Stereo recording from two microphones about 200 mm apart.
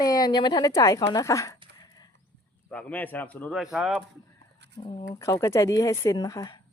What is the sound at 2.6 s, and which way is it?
Speech, 5° left (ahead or behind).